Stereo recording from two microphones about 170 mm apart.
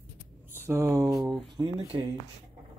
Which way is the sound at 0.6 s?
20° right (ahead or behind).